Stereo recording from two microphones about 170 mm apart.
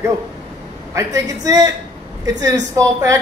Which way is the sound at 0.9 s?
20° right (ahead or behind).